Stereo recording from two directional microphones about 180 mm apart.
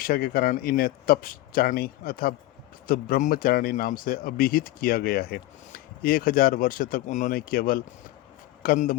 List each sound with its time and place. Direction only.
0.0 s speech: 55° left (ahead or behind)